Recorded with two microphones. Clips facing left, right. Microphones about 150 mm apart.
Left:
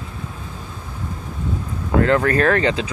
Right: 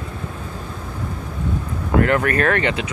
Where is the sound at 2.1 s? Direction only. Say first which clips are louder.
Left 2 dB; 25° left (ahead or behind).